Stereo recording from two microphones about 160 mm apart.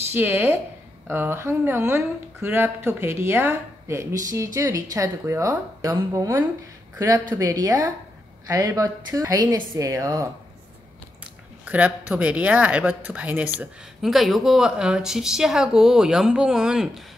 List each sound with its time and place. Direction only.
0.1 s speech: 15° right (ahead or behind)
11.6 s speech: 10° right (ahead or behind)